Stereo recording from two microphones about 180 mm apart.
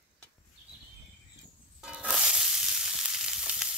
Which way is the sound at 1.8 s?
5° right (ahead or behind).